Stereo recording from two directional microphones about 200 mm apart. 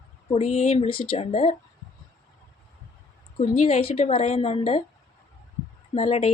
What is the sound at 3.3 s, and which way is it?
A woman's voice, 30° left (ahead or behind).